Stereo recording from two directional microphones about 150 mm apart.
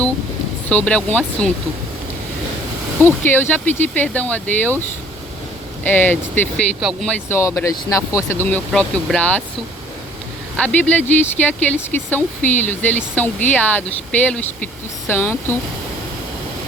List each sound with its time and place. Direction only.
0.7 s speech: 10° left (ahead or behind)
3.2 s speech: 15° left (ahead or behind)
5.8 s speech: 10° left (ahead or behind)
6.7 s speech: 5° right (ahead or behind)
7.3 s speech: 15° left (ahead or behind)
10.6 s speech: 10° left (ahead or behind)